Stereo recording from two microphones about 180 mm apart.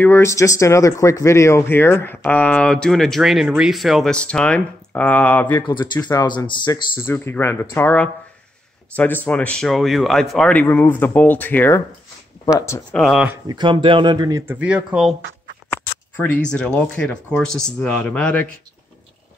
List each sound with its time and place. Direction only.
0.0 s speech: 15° left (ahead or behind)
5.6 s speech: 25° left (ahead or behind)
12.9 s speech: centre (ahead or behind)
13.5 s speech: 25° right (ahead or behind); by 15.1 s 5° right (ahead or behind)
15.7 s a sound: 10° left (ahead or behind)
16.5 s speech: 5° left (ahead or behind)